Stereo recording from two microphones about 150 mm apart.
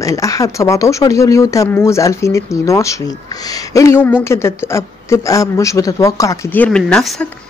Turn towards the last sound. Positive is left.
turn(degrees=5)  # may be behind; listen again after turning